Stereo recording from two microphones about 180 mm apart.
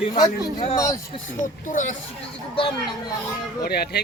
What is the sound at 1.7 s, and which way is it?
Speech, 45° left (ahead or behind).